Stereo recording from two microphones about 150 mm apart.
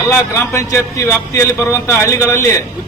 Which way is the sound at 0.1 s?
15° left (ahead or behind).